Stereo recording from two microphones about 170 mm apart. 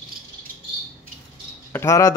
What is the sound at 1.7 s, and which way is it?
Speech, 15° left (ahead or behind).